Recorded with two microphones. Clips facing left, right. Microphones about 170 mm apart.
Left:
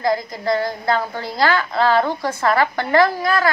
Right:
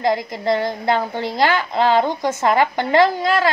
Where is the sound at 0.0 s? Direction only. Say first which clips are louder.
Right 1 dB; 20° right (ahead or behind).